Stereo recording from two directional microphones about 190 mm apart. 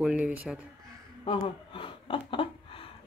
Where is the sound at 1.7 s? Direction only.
25° left (ahead or behind).